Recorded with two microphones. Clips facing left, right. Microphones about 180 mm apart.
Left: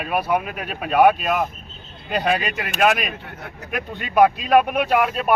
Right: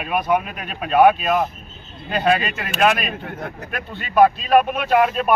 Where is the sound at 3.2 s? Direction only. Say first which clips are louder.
Right 6 dB; 50° right (ahead or behind).